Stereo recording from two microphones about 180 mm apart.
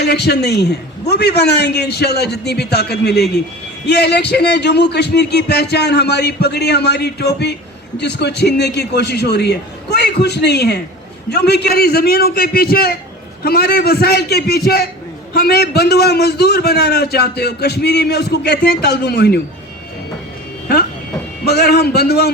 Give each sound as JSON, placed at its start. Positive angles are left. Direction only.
{"t": 0.0, "sound": "a man's voice", "side_deg": 65}
{"t": 21.4, "sound": "a man's voice", "side_deg": 65}